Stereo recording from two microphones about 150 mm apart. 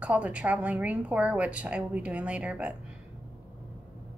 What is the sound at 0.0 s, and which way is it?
A woman's voice, 10° right (ahead or behind).